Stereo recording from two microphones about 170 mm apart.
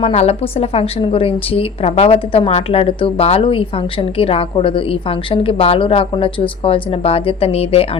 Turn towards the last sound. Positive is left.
turn(degrees=35)  # may be behind; listen again after turning